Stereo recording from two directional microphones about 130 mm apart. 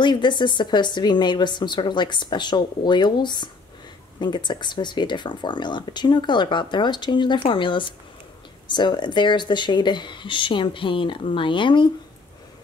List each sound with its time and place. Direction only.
0.0 s speech: 35° left (ahead or behind)